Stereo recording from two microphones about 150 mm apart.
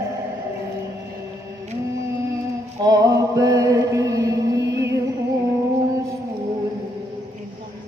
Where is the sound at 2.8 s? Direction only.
25° right (ahead or behind).